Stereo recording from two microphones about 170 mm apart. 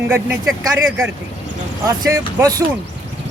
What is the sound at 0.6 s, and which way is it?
Speech, 20° right (ahead or behind).